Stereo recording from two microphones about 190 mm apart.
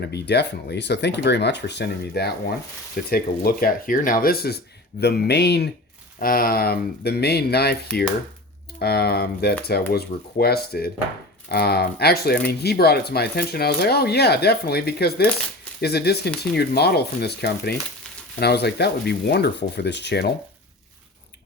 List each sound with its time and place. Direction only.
0.1 s speech: 60° left (ahead or behind)
6.1 s speech: 50° left (ahead or behind)
8.8 s speech: 55° left (ahead or behind)